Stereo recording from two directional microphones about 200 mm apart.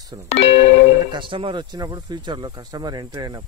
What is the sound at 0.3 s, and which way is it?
Speech, 30° left (ahead or behind).